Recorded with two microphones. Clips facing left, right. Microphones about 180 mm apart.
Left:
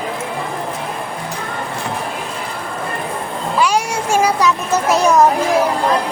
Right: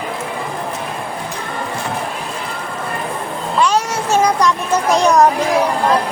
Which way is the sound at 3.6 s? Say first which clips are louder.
Right 1 dB; 10° left (ahead or behind).